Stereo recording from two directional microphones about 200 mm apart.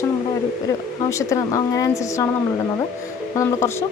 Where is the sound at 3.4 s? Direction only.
15° left (ahead or behind).